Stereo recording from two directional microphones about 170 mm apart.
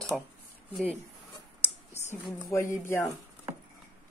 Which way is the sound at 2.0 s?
40° left (ahead or behind).